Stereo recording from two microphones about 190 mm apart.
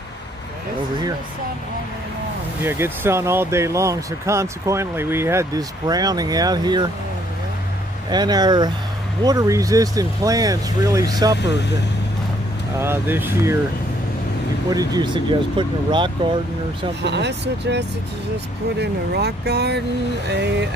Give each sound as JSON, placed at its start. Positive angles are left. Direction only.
{"t": 2.6, "sound": "speech", "side_deg": -10}
{"t": 8.1, "sound": "speech", "side_deg": -20}
{"t": 12.7, "sound": "speech", "side_deg": -10}
{"t": 14.7, "sound": "speech", "side_deg": -20}
{"t": 17.0, "sound": "speech", "side_deg": -65}